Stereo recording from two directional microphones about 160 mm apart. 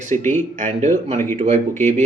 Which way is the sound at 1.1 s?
15° left (ahead or behind).